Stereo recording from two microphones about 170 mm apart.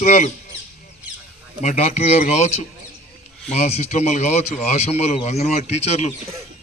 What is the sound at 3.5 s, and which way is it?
Speech, 40° left (ahead or behind).